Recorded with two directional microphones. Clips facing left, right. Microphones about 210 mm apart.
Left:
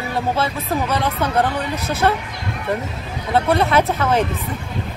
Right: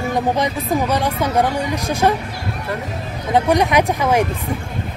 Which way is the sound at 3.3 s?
15° right (ahead or behind).